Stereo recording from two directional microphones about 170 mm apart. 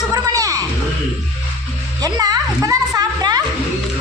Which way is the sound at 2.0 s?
20° right (ahead or behind).